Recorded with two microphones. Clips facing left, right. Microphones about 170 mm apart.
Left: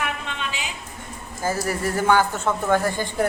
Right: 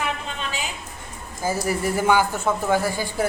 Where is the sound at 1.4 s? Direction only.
10° right (ahead or behind).